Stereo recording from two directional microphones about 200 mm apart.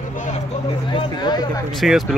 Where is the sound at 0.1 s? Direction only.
40° left (ahead or behind).